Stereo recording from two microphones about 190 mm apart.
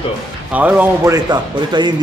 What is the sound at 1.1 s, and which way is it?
Speech, 25° right (ahead or behind).